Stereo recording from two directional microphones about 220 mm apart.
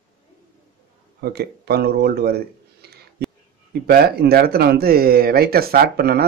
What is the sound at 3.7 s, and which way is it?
Speech, 45° right (ahead or behind).